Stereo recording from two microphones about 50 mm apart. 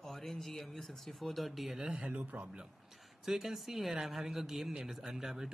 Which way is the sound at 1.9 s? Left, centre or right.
Centre.